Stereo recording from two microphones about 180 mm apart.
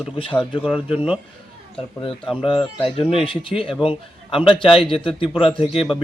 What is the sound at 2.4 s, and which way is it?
A man's voice, 25° left (ahead or behind).